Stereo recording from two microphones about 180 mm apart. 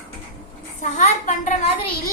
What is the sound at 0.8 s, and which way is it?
A child's voice, 45° left (ahead or behind).